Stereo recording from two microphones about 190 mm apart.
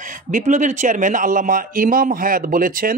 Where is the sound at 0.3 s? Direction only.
40° right (ahead or behind).